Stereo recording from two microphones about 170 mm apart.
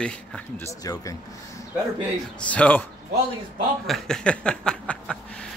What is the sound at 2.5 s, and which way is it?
Speech, 10° left (ahead or behind).